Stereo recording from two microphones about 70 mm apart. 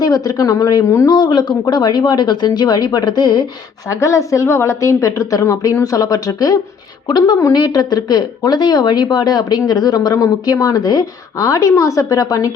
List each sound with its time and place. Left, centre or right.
0.0 s a woman's voice: left
1.1 s speech: left
3.8 s a woman's voice: left
7.1 s a woman's voice: left